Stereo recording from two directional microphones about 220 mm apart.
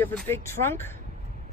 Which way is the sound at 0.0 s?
10° left (ahead or behind).